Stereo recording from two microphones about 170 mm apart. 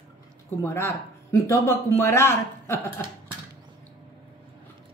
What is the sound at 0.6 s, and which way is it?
Speech, 15° left (ahead or behind).